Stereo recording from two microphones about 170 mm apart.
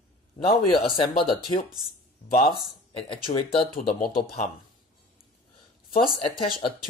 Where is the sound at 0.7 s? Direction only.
30° left (ahead or behind).